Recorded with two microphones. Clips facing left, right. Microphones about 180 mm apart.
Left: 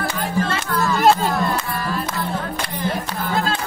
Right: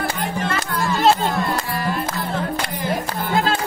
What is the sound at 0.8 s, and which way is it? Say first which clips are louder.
Music: left 1 dB; 20° right (ahead or behind).